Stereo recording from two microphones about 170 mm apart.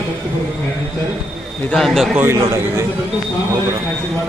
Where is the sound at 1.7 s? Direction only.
Centre (ahead or behind).